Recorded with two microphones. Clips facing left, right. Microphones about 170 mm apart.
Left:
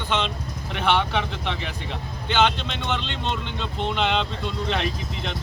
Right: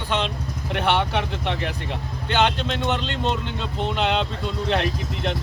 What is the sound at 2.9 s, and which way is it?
Speech, 45° right (ahead or behind).